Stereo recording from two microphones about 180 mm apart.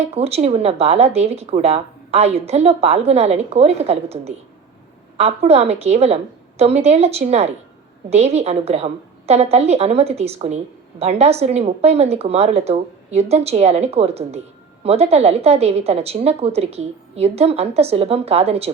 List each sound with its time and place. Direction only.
0.0 s speech: 35° right (ahead or behind)